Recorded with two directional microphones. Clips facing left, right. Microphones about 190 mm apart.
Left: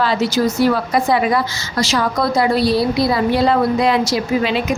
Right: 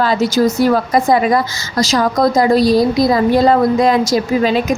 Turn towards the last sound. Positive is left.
turn(degrees=-45)  # may be behind; listen again after turning